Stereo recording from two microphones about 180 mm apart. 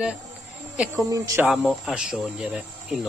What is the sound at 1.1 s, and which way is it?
Speech, 20° right (ahead or behind).